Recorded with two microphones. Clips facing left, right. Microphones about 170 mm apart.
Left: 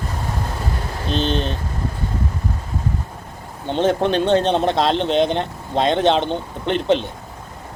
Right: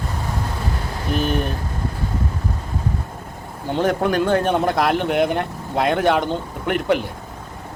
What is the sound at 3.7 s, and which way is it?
Speech, 25° left (ahead or behind).